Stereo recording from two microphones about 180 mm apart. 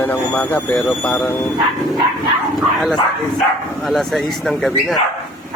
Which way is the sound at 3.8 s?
Centre (ahead or behind).